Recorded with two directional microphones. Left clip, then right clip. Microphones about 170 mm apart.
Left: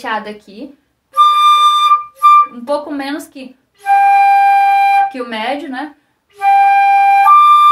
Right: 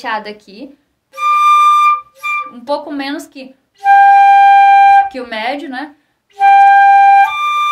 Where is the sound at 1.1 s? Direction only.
25° right (ahead or behind).